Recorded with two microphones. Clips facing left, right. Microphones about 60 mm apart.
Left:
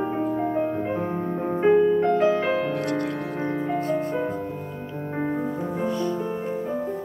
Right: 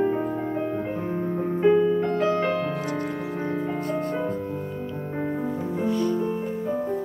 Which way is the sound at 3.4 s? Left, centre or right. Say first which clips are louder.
Left 3 dB; left.